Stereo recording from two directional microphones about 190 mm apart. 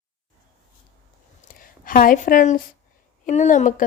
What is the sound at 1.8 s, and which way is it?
A woman's voice, 45° left (ahead or behind).